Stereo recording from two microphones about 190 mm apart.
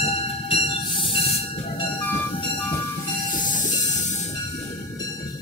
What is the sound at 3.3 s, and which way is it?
Train, 45° left (ahead or behind).